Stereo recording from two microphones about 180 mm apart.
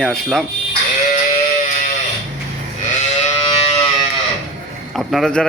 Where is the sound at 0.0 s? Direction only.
Centre (ahead or behind).